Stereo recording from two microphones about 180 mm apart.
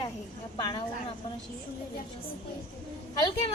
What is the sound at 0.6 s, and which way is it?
Speech, 25° left (ahead or behind).